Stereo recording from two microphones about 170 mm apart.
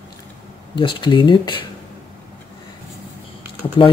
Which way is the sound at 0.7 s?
30° left (ahead or behind).